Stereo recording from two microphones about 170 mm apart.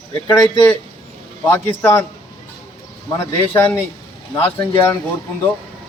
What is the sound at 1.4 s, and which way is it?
Speech, 15° left (ahead or behind).